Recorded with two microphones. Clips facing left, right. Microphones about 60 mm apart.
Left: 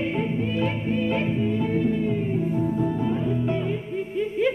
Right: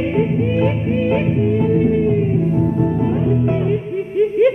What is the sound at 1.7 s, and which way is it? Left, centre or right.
Music, right.